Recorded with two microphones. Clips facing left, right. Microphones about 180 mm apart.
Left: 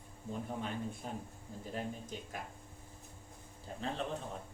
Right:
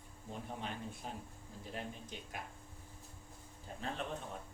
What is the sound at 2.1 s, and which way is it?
Speech, 40° left (ahead or behind).